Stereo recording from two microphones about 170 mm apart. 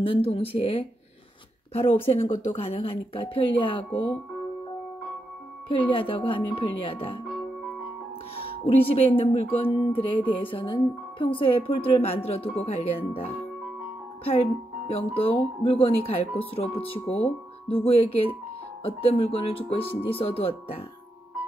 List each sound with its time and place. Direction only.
0.0 s music: 30° left (ahead or behind)
5.7 s music: 30° left (ahead or behind)
7.2 s music: 5° right (ahead or behind)
8.6 s music: 35° left (ahead or behind)
14.9 s music: 35° left (ahead or behind)